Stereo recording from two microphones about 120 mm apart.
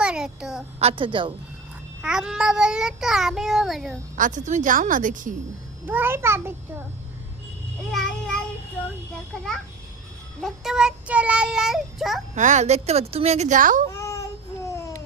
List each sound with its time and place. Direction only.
0.0 s a sound: 5° right (ahead or behind)
0.8 s a woman's voice: 55° right (ahead or behind)
2.0 s child singing: 5° right (ahead or behind)
4.2 s a woman's voice: 90° right
5.8 s a child's voice: 15° right (ahead or behind)
7.9 s child singing: 5° left (ahead or behind)
10.4 s child singing: 5° right (ahead or behind)
12.3 s a woman's voice: 85° right
13.9 s child singing: 25° left (ahead or behind)